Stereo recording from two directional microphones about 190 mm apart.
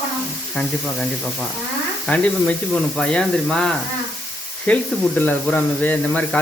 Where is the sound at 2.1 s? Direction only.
5° left (ahead or behind).